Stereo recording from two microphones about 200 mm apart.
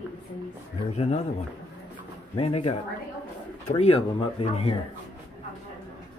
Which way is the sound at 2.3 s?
30° left (ahead or behind).